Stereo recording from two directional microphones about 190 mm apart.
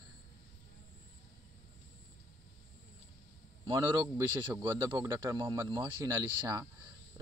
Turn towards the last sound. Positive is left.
turn(degrees=-15)  # may be behind; listen again after turning